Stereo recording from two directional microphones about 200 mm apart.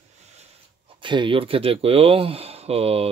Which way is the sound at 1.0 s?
25° right (ahead or behind).